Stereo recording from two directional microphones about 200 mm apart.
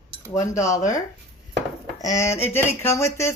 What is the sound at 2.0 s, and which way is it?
A woman's voice, 15° left (ahead or behind).